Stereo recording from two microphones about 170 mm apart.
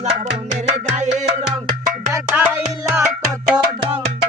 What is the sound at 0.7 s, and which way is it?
Music, 40° right (ahead or behind).